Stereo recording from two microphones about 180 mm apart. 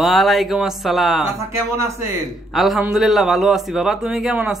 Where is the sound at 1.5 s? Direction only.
15° right (ahead or behind).